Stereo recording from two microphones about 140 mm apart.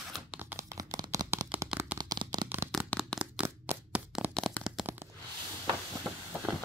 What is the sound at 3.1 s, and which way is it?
Crack, 10° right (ahead or behind).